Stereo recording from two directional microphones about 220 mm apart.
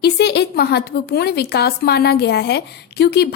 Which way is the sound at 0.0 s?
50° left (ahead or behind).